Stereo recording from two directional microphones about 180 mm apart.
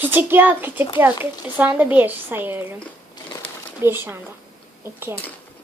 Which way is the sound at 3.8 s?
10° right (ahead or behind).